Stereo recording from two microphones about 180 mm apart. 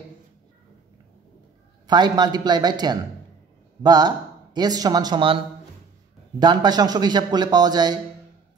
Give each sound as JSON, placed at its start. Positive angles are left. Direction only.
{"t": 1.9, "sound": "a man's voice", "side_deg": -25}
{"t": 6.4, "sound": "a man's voice", "side_deg": -25}